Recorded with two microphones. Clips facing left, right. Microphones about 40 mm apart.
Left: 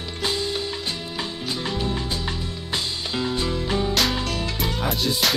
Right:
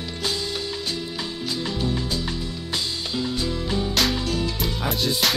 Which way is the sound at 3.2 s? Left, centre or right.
Left.